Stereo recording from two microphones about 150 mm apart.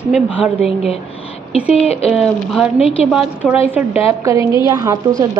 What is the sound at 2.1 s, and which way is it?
A woman's voice, centre (ahead or behind).